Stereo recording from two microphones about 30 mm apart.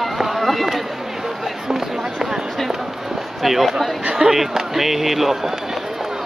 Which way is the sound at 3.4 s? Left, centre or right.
Centre.